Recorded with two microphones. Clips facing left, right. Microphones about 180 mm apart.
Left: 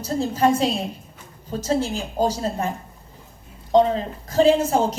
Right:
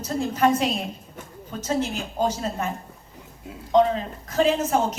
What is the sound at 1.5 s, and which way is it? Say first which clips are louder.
A woman's voice: left 3 dB; 30° left (ahead or behind).